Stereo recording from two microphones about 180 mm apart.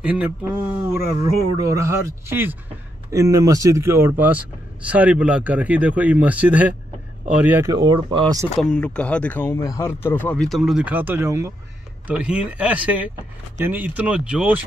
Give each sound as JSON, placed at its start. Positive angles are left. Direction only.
{"t": 0.0, "sound": "speech", "side_deg": -10}
{"t": 7.9, "sound": "speech", "side_deg": -25}
{"t": 8.5, "sound": "speech", "side_deg": 5}